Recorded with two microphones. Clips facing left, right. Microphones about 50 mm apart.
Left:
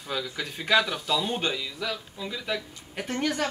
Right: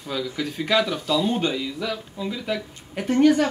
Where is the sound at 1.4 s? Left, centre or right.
Centre.